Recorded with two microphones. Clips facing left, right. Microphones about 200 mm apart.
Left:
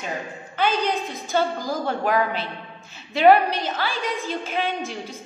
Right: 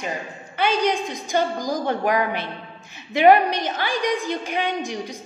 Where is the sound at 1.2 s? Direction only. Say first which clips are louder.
Even; 15° right (ahead or behind).